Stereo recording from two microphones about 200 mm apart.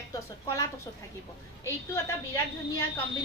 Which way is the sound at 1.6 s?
15° left (ahead or behind).